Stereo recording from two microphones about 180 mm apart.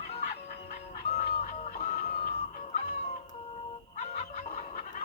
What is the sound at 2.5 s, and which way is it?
Cat, 45° left (ahead or behind).